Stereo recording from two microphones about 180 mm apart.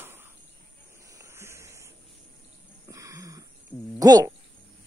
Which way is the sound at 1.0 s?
15° right (ahead or behind).